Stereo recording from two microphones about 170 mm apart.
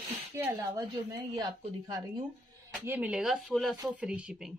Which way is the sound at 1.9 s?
20° right (ahead or behind).